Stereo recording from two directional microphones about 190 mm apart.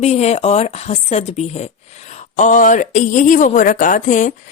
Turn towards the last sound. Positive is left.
turn(degrees=40)  # may be behind; listen again after turning